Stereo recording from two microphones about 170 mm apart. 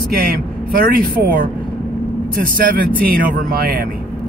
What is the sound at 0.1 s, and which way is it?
Speech, 60° right (ahead or behind).